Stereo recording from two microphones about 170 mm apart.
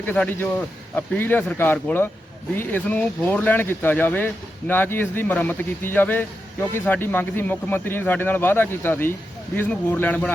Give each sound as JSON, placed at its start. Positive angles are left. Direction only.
{"t": 0.0, "sound": "a man's voice", "side_deg": 10}